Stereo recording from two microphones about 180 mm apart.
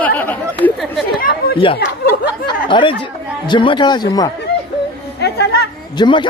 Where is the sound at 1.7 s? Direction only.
75° left (ahead or behind).